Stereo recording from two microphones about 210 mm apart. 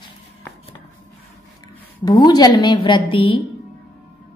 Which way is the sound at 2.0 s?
20° left (ahead or behind).